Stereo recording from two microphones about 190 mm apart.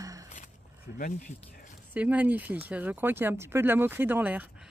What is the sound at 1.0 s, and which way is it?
Speech, 45° left (ahead or behind).